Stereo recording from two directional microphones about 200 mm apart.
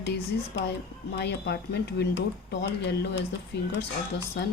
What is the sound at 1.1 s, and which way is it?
Speech, 55° left (ahead or behind).